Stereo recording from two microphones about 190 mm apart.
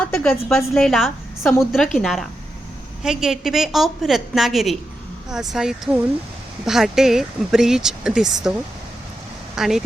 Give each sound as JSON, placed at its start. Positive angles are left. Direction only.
{"t": 0.0, "sound": "speech", "side_deg": 5}
{"t": 9.6, "sound": "speech", "side_deg": 0}